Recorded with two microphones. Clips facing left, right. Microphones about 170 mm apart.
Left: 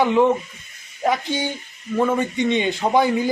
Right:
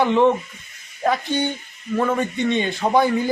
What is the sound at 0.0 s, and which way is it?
A man's voice, 10° left (ahead or behind).